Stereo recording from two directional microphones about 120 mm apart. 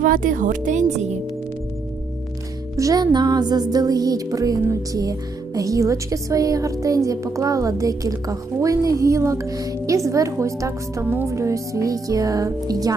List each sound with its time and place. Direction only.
0.3 s speech: 90° right; by 1.1 s 70° right (ahead or behind)
2.7 s music: 30° right (ahead or behind)
5.5 s a woman's voice: 30° right (ahead or behind)